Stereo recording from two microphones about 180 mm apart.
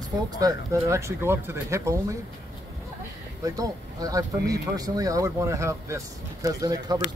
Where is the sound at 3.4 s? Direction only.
20° right (ahead or behind).